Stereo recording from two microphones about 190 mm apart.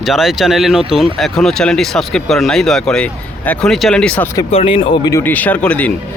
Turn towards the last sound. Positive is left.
turn(degrees=5)  # may be behind; listen again after turning